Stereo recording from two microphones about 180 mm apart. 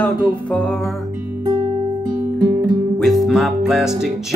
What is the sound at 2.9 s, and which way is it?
Music, centre (ahead or behind).